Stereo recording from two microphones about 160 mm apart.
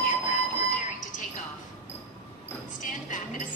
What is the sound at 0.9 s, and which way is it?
Music, 55° left (ahead or behind).